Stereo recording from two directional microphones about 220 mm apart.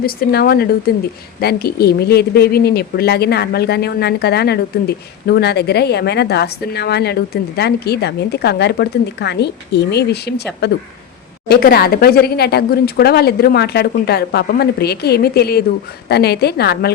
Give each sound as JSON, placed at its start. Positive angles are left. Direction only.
{"t": 0.0, "sound": "speech", "side_deg": 45}